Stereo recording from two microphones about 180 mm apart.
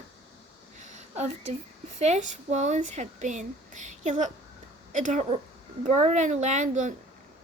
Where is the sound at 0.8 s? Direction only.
40° right (ahead or behind).